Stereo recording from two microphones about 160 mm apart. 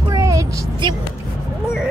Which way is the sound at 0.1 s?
20° right (ahead or behind).